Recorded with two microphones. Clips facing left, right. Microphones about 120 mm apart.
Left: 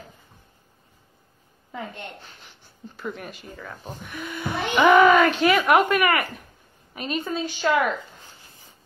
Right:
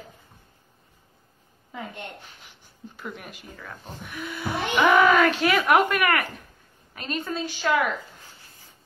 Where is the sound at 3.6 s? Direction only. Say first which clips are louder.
Left 3 dB; 15° left (ahead or behind).